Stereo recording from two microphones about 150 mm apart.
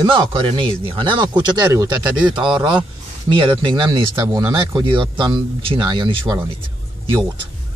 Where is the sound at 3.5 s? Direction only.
35° right (ahead or behind).